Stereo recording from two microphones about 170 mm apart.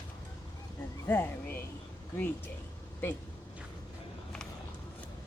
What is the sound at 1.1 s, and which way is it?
Speech, 15° left (ahead or behind).